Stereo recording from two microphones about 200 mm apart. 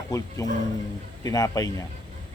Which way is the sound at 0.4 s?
20° left (ahead or behind).